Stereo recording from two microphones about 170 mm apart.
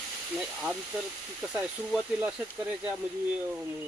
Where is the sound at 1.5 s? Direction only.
10° right (ahead or behind).